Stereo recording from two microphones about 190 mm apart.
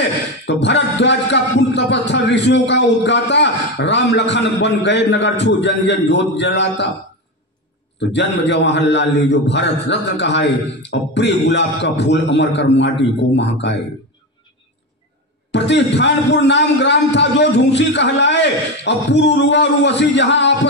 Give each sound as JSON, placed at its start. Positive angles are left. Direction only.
{"t": 0.0, "sound": "speech", "side_deg": 65}
{"t": 8.1, "sound": "a man's voice", "side_deg": 65}
{"t": 15.5, "sound": "a man's voice", "side_deg": 65}